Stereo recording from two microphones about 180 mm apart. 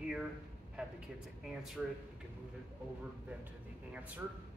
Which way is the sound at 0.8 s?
5° right (ahead or behind).